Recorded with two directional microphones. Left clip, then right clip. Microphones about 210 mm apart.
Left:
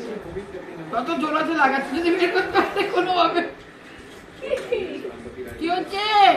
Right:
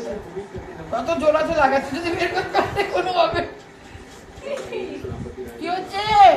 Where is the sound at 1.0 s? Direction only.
25° right (ahead or behind).